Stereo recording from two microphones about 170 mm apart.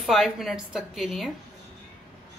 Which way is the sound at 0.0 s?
Centre (ahead or behind).